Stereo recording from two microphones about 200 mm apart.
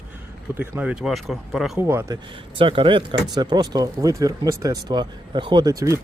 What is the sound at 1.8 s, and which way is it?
Speech, 10° right (ahead or behind).